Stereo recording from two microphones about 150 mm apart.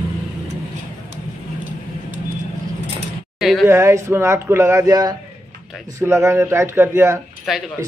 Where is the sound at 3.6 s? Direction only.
20° right (ahead or behind).